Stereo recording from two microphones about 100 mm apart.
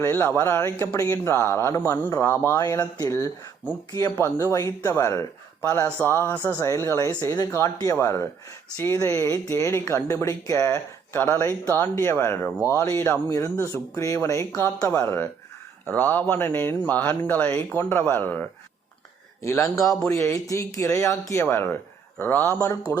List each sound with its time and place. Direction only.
0.0 s speech: 25° left (ahead or behind)
4.1 s speech: 25° left (ahead or behind)
19.4 s a man's voice: 30° left (ahead or behind)
19.8 s speech: centre (ahead or behind)
20.1 s speech: 30° left (ahead or behind)